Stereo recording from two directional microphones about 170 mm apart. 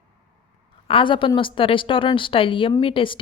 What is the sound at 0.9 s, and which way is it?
A woman's voice, 30° left (ahead or behind).